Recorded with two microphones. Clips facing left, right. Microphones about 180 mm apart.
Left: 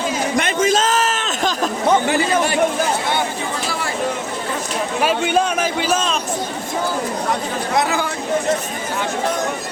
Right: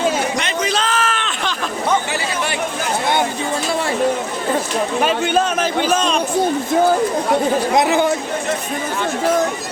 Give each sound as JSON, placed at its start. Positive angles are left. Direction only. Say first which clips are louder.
{"t": 0.3, "sound": "a sound", "louder": "left 4 dB", "side_deg": 50}
{"t": 2.0, "sound": "a man's voice", "louder": "left 5 dB", "side_deg": 50}
{"t": 4.9, "sound": "a man's voice", "louder": "even", "side_deg": 5}
{"t": 7.7, "sound": "speech", "louder": "right 2 dB", "side_deg": -20}